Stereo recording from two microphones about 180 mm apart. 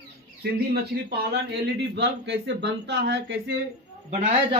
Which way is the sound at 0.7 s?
60° right (ahead or behind).